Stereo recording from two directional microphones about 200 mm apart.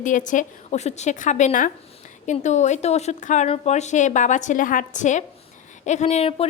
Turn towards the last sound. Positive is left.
turn(degrees=30)  # may be behind; listen again after turning